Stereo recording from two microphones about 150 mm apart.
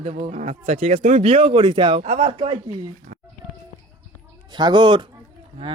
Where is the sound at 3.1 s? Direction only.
70° right (ahead or behind).